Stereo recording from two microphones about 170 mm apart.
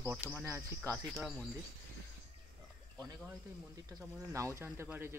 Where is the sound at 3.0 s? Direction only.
20° right (ahead or behind).